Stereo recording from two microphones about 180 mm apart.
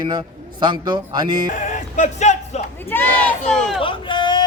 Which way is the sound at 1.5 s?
45° left (ahead or behind).